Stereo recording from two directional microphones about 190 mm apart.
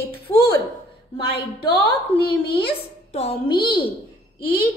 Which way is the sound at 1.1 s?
30° left (ahead or behind).